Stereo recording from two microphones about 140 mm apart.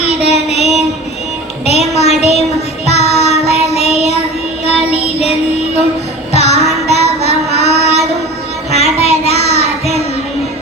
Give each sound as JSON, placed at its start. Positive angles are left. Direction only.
{"t": 0.0, "sound": "child singing", "side_deg": 50}
{"t": 6.3, "sound": "child singing", "side_deg": 50}